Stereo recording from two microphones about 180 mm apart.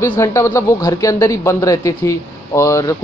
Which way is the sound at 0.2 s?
15° left (ahead or behind).